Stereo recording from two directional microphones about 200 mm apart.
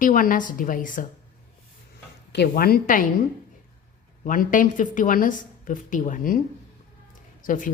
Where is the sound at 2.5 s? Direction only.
45° left (ahead or behind).